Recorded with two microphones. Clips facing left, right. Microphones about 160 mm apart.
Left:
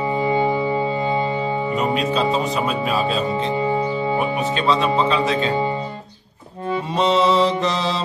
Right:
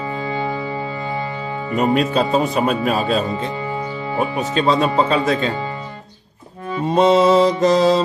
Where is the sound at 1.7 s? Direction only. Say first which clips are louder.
Right 6 dB; 50° right (ahead or behind).